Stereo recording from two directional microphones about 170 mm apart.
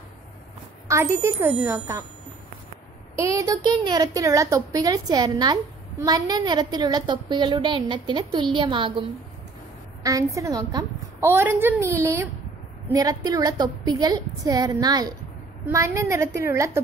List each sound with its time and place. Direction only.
0.8 s a woman's voice: 15° right (ahead or behind)
3.2 s a woman's voice: 20° right (ahead or behind)
10.0 s a woman's voice: 20° right (ahead or behind)